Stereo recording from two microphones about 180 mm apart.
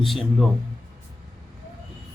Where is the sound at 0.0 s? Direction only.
Centre (ahead or behind).